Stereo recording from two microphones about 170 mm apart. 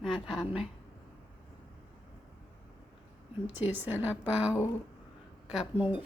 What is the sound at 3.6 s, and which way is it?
Speech, 10° right (ahead or behind).